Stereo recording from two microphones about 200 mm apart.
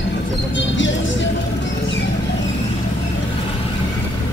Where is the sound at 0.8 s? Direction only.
65° left (ahead or behind).